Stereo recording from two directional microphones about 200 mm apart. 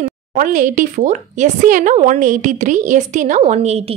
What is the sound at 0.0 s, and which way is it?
A woman's voice, 40° right (ahead or behind).